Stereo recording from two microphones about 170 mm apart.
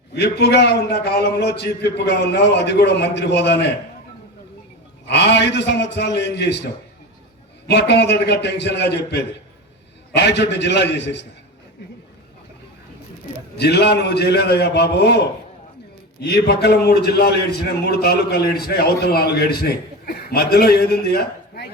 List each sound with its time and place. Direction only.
0.1 s a man's voice: 75° left (ahead or behind)
5.0 s a man's voice: 85° left
7.7 s a man's voice: 80° left
13.6 s a man's voice: 75° left (ahead or behind)
16.2 s a man's voice: 75° left (ahead or behind)